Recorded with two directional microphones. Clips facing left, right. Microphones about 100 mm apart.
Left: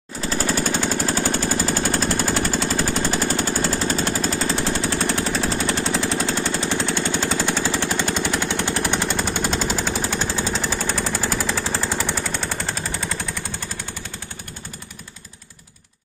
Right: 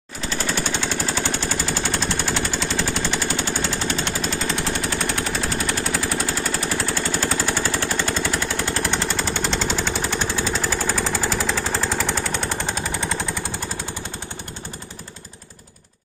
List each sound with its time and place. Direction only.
0.3 s jackhammer: 40° left (ahead or behind)
1.7 s machine gun: 45° left (ahead or behind); by 8.8 s 20° left (ahead or behind)
8.9 s jackhammer: 15° left (ahead or behind)
11.4 s a sound: 10° left (ahead or behind)
12.2 s machine gun: centre (ahead or behind)